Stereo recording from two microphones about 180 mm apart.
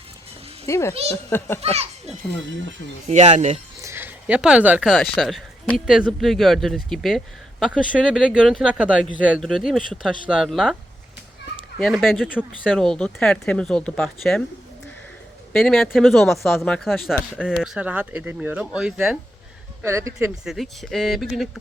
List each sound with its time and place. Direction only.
0.7 s a child's voice: 15° left (ahead or behind)
1.7 s a child's voice: 35° right (ahead or behind)
3.8 s a sound: 15° right (ahead or behind)
5.1 s speech: centre (ahead or behind)
11.8 s speech: centre (ahead or behind)
15.5 s speech: centre (ahead or behind)
19.8 s speech: 15° right (ahead or behind)
20.4 s speech: centre (ahead or behind)